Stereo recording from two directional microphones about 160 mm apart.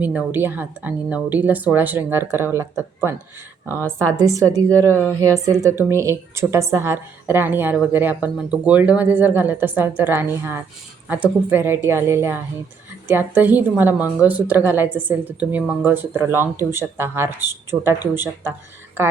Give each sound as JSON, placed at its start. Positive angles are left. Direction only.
{"t": 0.0, "sound": "a woman's voice", "side_deg": -10}